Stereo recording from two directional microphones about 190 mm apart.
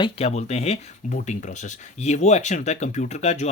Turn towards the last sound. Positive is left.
turn(degrees=35)  # may be behind; listen again after turning